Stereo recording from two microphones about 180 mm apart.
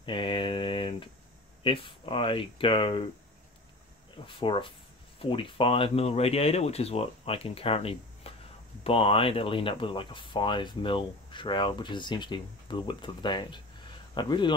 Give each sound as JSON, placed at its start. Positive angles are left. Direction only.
{"t": 0.0, "sound": "a sound", "side_deg": 25}
{"t": 1.6, "sound": "speech", "side_deg": 30}
{"t": 4.3, "sound": "speech", "side_deg": 30}